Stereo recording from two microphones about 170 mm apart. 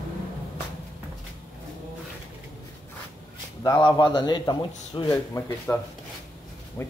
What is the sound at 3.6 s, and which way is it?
A man's voice, 25° left (ahead or behind).